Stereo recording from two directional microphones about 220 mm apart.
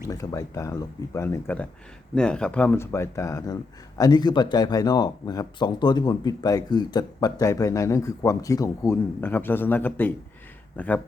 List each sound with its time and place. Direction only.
0.1 s speech: 15° left (ahead or behind)